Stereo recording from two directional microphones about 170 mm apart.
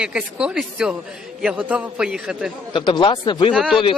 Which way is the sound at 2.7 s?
30° left (ahead or behind).